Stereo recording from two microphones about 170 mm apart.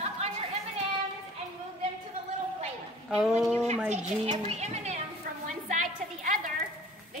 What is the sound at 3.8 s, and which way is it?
A child's voice, 40° right (ahead or behind).